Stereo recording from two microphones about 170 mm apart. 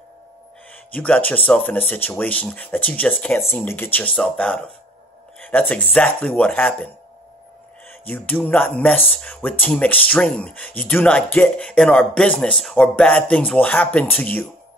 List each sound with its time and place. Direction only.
0.9 s speech: 10° left (ahead or behind)
8.0 s speech: 10° left (ahead or behind)